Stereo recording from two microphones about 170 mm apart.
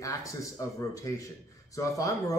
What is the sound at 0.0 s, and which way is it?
A man's voice, 20° left (ahead or behind).